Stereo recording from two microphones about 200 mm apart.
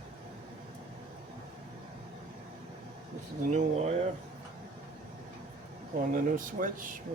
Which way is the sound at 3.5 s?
35° right (ahead or behind).